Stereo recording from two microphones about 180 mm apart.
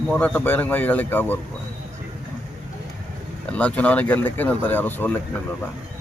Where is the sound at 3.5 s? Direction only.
5° left (ahead or behind).